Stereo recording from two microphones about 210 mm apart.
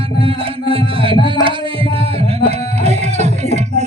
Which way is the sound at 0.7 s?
25° right (ahead or behind).